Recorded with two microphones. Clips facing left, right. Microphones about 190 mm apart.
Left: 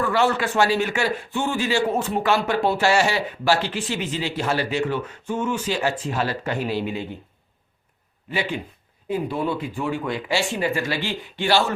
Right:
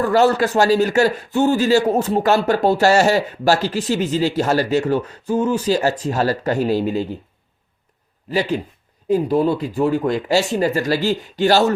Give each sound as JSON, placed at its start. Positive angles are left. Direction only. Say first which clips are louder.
{"t": 0.0, "sound": "a man's voice", "louder": "right 6 dB", "side_deg": -40}
{"t": 8.3, "sound": "a man's voice", "louder": "right 6 dB", "side_deg": -40}